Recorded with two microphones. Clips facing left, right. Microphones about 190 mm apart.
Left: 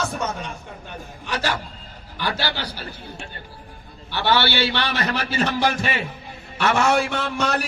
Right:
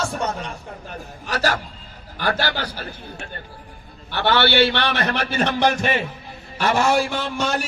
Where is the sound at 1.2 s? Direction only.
40° right (ahead or behind).